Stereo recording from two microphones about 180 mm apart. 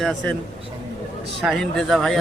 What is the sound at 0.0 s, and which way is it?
Speech, centre (ahead or behind).